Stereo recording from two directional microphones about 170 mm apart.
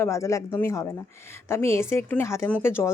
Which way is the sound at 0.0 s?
15° left (ahead or behind).